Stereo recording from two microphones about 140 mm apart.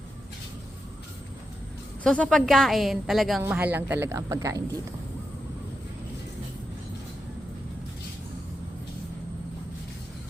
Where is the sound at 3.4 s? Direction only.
10° right (ahead or behind).